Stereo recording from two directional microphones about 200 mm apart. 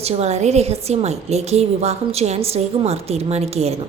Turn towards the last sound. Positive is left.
turn(degrees=-30)  # may be behind; listen again after turning